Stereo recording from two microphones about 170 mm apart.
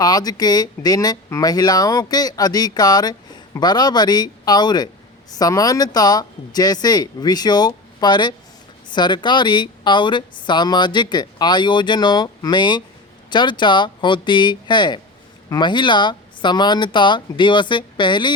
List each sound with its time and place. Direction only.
0.0 s speech: 20° left (ahead or behind)